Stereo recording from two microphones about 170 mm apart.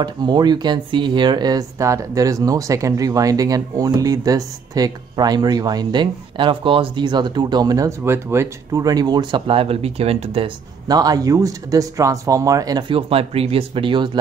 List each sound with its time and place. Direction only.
0.0 s speech: 25° right (ahead or behind)
10.9 s speech: 20° right (ahead or behind)